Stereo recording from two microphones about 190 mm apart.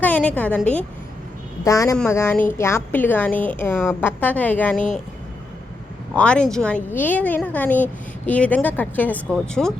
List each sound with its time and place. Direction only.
0.0 s speech: 10° left (ahead or behind)
1.6 s speech: 15° left (ahead or behind)
6.1 s speech: 5° left (ahead or behind)